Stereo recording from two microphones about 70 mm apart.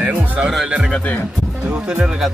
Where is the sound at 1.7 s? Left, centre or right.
Centre.